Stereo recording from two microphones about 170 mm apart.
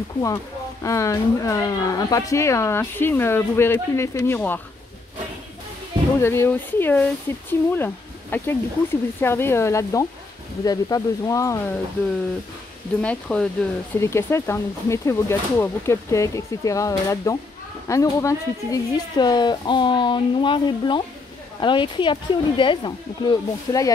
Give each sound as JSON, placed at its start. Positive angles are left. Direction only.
{"t": 0.8, "sound": "a woman's voice", "side_deg": 20}
{"t": 6.2, "sound": "a woman's voice", "side_deg": 15}
{"t": 13.0, "sound": "a woman's voice", "side_deg": 5}